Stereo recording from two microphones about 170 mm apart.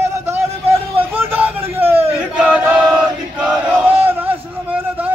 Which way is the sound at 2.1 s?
5° right (ahead or behind).